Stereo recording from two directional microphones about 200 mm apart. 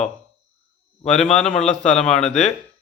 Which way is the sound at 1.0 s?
5° left (ahead or behind).